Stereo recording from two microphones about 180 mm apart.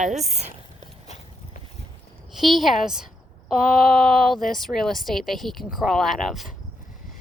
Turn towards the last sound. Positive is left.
turn(degrees=0)  # may be behind; listen again after turning